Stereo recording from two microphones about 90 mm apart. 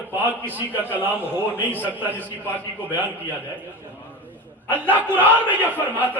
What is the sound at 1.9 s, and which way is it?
A man's voice, 20° right (ahead or behind).